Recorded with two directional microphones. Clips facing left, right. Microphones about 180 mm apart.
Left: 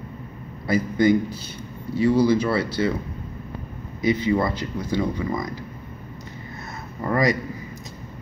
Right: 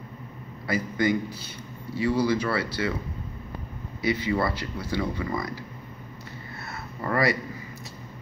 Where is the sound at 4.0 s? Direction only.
20° left (ahead or behind).